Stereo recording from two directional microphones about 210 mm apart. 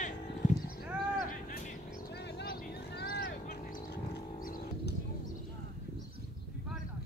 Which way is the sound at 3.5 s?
40° left (ahead or behind).